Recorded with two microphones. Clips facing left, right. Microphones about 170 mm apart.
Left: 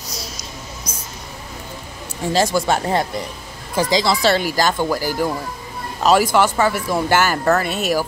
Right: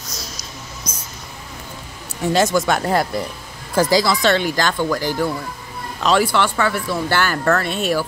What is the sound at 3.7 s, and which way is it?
Speech, 15° left (ahead or behind).